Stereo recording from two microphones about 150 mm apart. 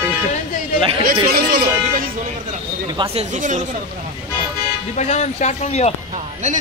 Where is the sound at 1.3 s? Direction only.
80° right.